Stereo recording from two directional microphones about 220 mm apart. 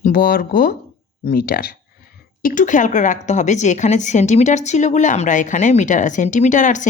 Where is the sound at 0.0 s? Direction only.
40° left (ahead or behind).